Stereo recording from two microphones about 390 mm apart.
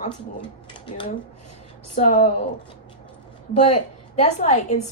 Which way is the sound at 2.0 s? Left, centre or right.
Centre.